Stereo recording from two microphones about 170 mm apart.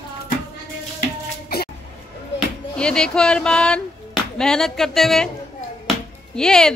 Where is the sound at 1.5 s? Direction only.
60° left (ahead or behind).